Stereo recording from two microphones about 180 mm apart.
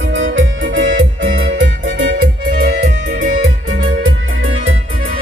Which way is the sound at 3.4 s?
85° right.